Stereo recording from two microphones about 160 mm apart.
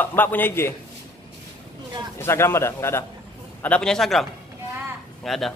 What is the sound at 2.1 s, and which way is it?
A man's voice, 15° left (ahead or behind).